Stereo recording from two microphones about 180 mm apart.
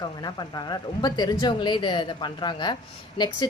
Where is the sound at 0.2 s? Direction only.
20° left (ahead or behind).